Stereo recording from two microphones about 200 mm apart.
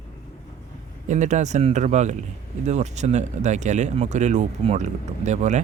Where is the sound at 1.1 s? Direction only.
35° right (ahead or behind).